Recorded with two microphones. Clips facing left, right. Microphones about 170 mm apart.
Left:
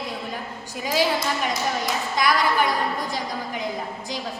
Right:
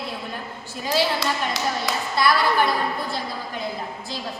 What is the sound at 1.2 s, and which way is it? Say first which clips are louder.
Speech: even; 75° right (ahead or behind).